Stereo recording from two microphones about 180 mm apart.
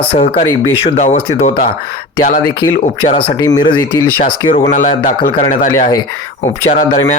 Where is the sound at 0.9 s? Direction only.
40° left (ahead or behind).